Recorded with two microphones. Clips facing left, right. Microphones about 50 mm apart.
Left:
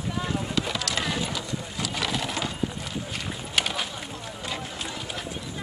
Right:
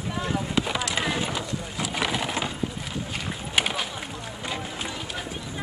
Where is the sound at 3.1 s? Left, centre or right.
Centre.